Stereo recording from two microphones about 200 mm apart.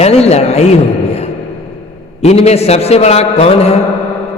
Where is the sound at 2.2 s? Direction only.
30° left (ahead or behind).